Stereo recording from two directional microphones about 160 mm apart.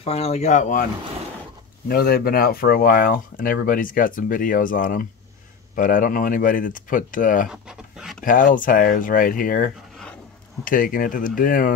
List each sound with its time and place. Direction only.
0.0 s speech: 40° left (ahead or behind)
1.9 s speech: 70° left (ahead or behind)